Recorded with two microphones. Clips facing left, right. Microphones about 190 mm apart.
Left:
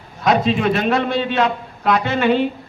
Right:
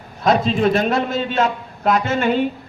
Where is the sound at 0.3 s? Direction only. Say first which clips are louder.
Even; 40° right (ahead or behind).